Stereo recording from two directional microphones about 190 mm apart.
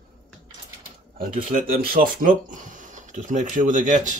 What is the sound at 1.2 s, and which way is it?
Speech, 45° right (ahead or behind).